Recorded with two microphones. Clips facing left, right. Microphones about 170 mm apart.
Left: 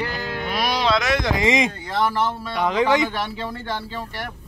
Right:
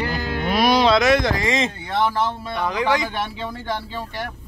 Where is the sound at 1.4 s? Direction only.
20° left (ahead or behind).